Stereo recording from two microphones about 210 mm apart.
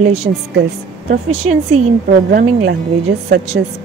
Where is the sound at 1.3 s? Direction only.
30° right (ahead or behind).